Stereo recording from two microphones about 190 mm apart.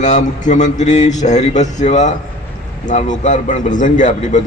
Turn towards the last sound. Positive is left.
turn(degrees=40)  # may be behind; listen again after turning